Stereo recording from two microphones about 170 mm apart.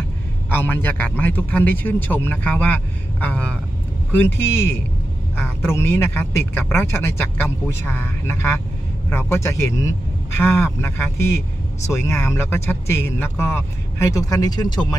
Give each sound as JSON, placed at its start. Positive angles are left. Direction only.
{"t": 0.5, "sound": "a man's voice", "side_deg": 10}